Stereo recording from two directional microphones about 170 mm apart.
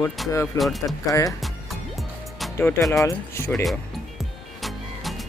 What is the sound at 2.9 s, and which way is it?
Speech, 20° left (ahead or behind).